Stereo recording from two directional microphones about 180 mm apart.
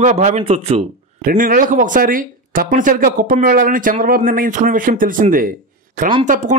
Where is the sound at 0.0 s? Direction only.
40° right (ahead or behind).